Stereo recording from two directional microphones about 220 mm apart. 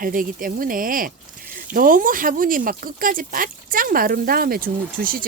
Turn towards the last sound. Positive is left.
turn(degrees=-40)  # may be behind; listen again after turning